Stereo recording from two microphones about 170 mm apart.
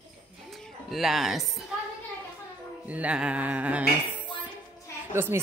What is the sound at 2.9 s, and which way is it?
Speech, 5° right (ahead or behind).